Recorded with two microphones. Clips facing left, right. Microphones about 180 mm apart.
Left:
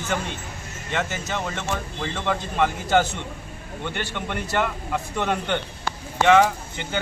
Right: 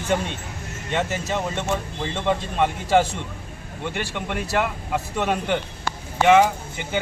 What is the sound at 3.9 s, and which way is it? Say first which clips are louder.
Speech: right 2 dB; 5° right (ahead or behind).